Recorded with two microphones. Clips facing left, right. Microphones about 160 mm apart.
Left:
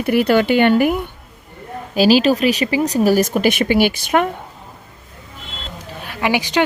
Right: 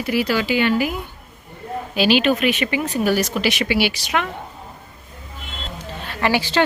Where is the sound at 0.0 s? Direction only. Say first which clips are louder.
Left 6 dB; 55° left (ahead or behind).